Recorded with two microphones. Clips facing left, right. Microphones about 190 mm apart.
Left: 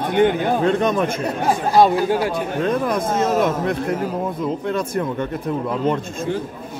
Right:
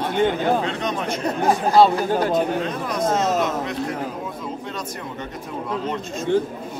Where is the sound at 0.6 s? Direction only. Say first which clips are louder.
Left 7 dB; 50° left (ahead or behind).